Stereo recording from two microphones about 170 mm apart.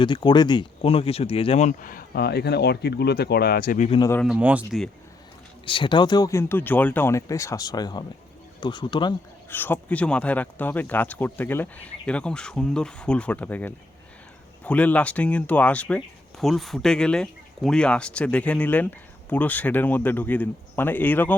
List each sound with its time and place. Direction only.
0.0 s speech: 25° left (ahead or behind); by 3.8 s 55° left (ahead or behind)
3.8 s speech: 30° left (ahead or behind)
4.3 s speech: 10° right (ahead or behind)
5.6 s speech: 30° left (ahead or behind)
9.5 s speech: 10° left (ahead or behind)